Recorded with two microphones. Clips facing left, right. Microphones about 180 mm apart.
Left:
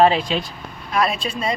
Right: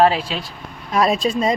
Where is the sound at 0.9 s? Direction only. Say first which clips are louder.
Right 4 dB; 40° right (ahead or behind).